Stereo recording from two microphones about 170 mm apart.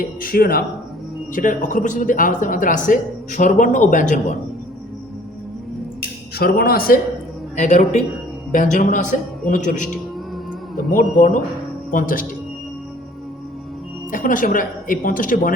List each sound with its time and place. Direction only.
0.0 s speech: 55° left (ahead or behind)
1.3 s speech: 50° left (ahead or behind)
6.3 s speech: 65° left (ahead or behind)
7.5 s speech: 45° left (ahead or behind)
14.1 s speech: 55° left (ahead or behind)